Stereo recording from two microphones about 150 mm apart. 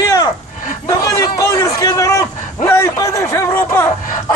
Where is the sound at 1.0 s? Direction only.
25° left (ahead or behind).